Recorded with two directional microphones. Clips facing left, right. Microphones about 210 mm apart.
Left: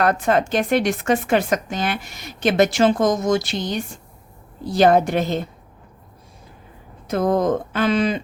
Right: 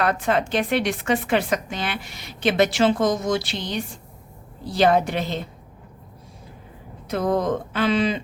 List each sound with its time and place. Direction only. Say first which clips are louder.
0.0 s a woman's voice: left 3 dB; 45° left (ahead or behind)
7.1 s a woman's voice: left 3 dB; 45° left (ahead or behind)